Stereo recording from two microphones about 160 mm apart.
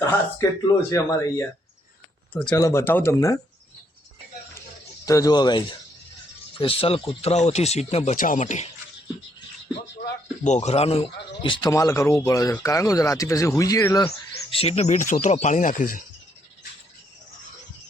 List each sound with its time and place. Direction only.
0.0 s speech: 20° left (ahead or behind)
5.0 s a man's voice: 20° left (ahead or behind); by 8.1 s 40° left (ahead or behind)
8.1 s speech: 55° left (ahead or behind)
10.4 s a man's voice: 45° left (ahead or behind)
11.7 s speech: 20° left (ahead or behind)
14.5 s speech: 40° left (ahead or behind); by 16.0 s 55° left (ahead or behind)